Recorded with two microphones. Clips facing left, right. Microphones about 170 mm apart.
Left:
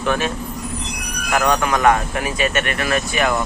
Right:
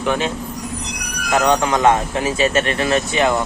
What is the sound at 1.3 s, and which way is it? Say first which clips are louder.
Speech: right 2 dB; 25° right (ahead or behind).